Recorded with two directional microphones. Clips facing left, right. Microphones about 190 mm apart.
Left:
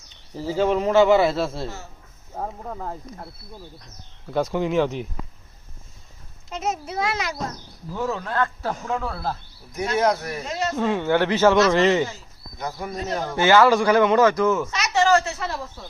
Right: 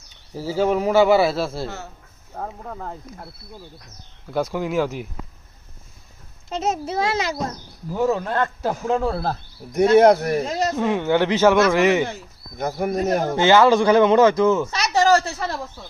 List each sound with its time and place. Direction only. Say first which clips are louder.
0.3 s speech: right 1 dB; 10° right (ahead or behind)
1.6 s a man's voice: right 2 dB; 65° right (ahead or behind)
2.6 s speech: left 1 dB; 5° left (ahead or behind)
4.3 s speech: left 1 dB; centre (ahead or behind)
6.5 s speech: right 4 dB; 30° right (ahead or behind)
8.9 s speech: right 8 dB; 30° right (ahead or behind)
10.0 s speech: right 8 dB; 60° right (ahead or behind)
10.4 s speech: right 4 dB; 35° right (ahead or behind)
10.8 s speech: even; 15° right (ahead or behind)
12.0 s speech: right 4 dB; 55° right (ahead or behind)
13.3 s speech: right 1 dB; 20° right (ahead or behind)
14.7 s a sound: right 2 dB; 35° right (ahead or behind)